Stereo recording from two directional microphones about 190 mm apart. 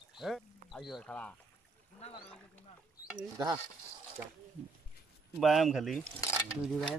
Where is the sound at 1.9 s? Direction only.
35° left (ahead or behind).